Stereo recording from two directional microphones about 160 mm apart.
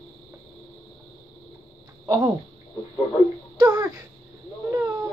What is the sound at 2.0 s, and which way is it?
Speech, 20° right (ahead or behind).